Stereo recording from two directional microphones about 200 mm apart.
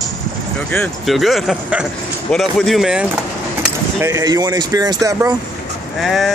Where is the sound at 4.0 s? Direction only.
15° right (ahead or behind).